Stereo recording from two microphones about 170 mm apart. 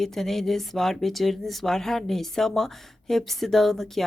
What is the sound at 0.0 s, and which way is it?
A woman's voice, centre (ahead or behind).